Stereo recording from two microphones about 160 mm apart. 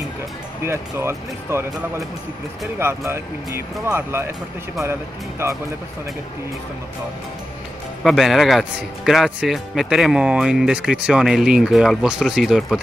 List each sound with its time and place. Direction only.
0.7 s speech: 15° right (ahead or behind)
5.4 s speech: 15° right (ahead or behind)
8.0 s a man's voice: centre (ahead or behind)